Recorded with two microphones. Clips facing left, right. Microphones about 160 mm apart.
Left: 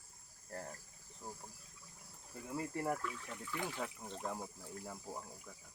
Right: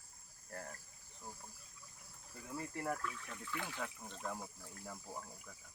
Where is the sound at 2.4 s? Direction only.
15° left (ahead or behind).